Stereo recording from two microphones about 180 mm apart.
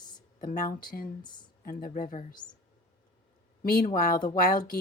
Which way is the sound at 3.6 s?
55° left (ahead or behind).